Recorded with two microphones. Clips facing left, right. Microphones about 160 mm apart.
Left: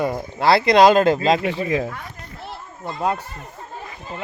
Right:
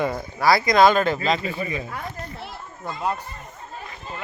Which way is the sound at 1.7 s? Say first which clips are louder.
Left 8 dB; 90° left.